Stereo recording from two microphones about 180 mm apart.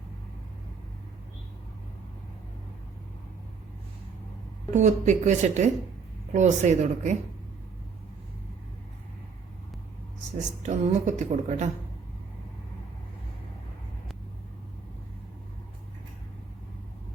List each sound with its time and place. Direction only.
4.7 s a woman's voice: 40° right (ahead or behind)
10.6 s a woman's voice: 40° right (ahead or behind)